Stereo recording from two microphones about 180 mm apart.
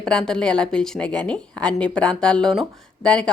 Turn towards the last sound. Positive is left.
turn(degrees=5)  # may be behind; listen again after turning